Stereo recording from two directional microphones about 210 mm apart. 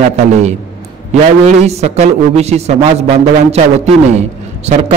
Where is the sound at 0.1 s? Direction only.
35° right (ahead or behind).